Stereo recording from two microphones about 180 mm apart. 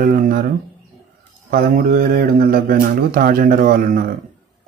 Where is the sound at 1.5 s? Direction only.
55° right (ahead or behind).